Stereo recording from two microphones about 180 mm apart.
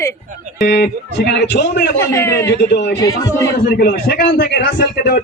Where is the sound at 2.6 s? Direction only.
65° left (ahead or behind).